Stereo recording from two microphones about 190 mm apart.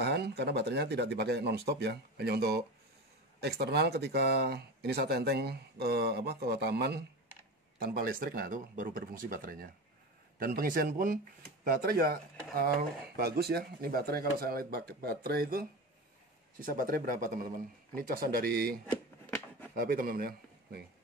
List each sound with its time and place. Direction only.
0.0 s speech: 60° right (ahead or behind)